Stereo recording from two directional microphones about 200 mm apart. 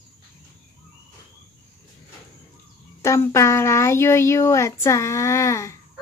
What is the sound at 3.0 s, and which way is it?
Speech, 15° left (ahead or behind).